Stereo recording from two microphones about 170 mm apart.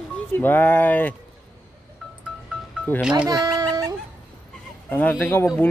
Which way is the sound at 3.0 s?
5° right (ahead or behind).